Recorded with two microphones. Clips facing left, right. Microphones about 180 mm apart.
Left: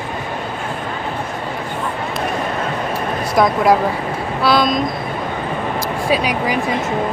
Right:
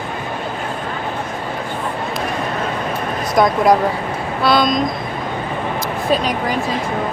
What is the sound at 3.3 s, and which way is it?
Speech, centre (ahead or behind).